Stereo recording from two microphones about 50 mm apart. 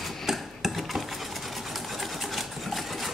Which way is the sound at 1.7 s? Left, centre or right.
Centre.